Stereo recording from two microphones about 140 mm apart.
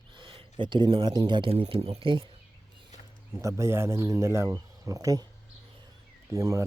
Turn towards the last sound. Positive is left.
turn(degrees=-20)  # may be behind; listen again after turning